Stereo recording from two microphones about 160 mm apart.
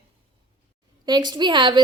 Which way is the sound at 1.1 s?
25° right (ahead or behind).